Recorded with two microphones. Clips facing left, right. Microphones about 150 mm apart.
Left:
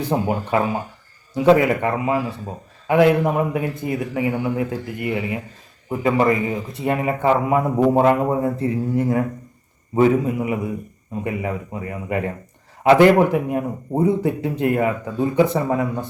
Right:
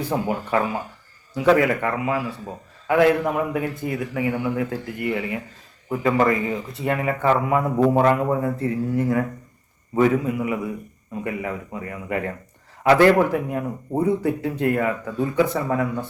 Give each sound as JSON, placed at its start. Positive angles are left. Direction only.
{"t": 0.0, "sound": "speech", "side_deg": 20}